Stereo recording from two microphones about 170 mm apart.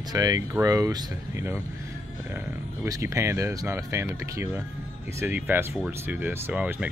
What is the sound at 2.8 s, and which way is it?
Speech, 15° right (ahead or behind).